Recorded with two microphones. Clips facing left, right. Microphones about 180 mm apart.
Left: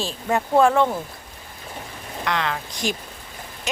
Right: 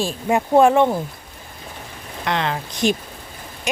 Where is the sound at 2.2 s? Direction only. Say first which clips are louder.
Right 3 dB; 25° right (ahead or behind).